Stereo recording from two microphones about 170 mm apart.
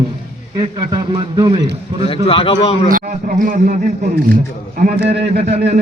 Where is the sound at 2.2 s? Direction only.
35° left (ahead or behind).